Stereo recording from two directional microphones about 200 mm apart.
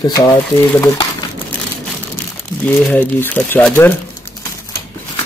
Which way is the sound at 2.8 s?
5° left (ahead or behind).